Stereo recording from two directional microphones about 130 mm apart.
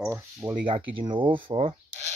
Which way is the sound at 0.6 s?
40° right (ahead or behind).